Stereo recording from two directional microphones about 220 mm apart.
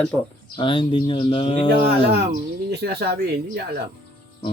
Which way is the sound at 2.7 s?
45° right (ahead or behind).